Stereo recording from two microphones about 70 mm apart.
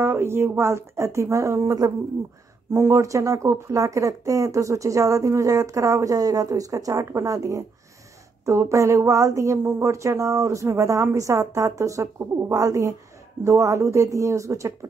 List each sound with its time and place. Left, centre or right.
0.0 s speech: right
9.6 s speech: right